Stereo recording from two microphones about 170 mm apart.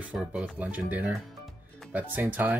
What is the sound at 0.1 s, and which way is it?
Speech, 5° right (ahead or behind).